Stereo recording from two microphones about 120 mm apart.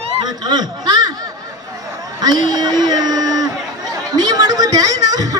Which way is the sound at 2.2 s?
35° right (ahead or behind).